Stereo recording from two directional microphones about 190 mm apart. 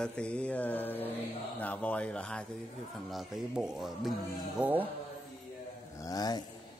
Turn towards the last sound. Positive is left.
turn(degrees=20)  # may be behind; listen again after turning